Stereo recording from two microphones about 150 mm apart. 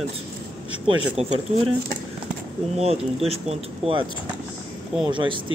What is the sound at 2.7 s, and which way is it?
Speech, 40° right (ahead or behind).